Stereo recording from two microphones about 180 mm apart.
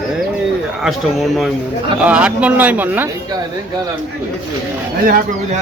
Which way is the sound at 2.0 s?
5° right (ahead or behind).